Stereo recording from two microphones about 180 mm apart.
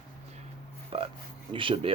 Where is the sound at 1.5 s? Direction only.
30° right (ahead or behind).